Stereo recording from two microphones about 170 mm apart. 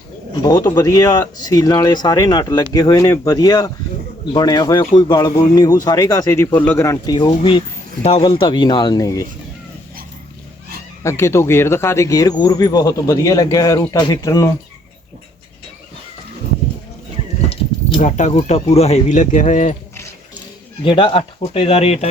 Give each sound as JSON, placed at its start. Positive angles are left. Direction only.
{"t": 0.4, "sound": "speech", "side_deg": 20}
{"t": 11.0, "sound": "speech", "side_deg": 15}
{"t": 17.5, "sound": "a sound", "side_deg": 30}
{"t": 18.0, "sound": "speech", "side_deg": 45}
{"t": 20.8, "sound": "speech", "side_deg": 30}